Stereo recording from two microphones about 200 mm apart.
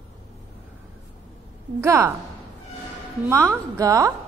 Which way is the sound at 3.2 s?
15° right (ahead or behind).